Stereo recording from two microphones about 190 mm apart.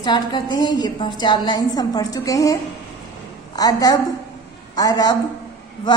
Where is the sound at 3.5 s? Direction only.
20° left (ahead or behind).